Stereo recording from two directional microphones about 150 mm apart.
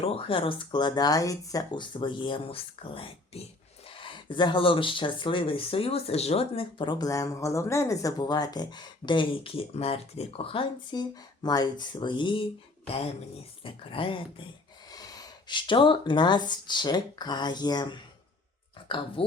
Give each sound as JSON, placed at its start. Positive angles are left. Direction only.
{"t": 0.0, "sound": "speech", "side_deg": 40}
{"t": 13.7, "sound": "speech", "side_deg": 35}